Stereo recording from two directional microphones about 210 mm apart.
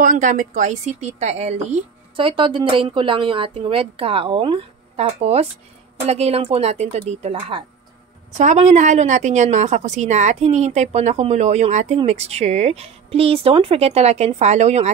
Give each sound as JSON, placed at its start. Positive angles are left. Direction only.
{"t": 0.0, "sound": "a woman's voice", "side_deg": -40}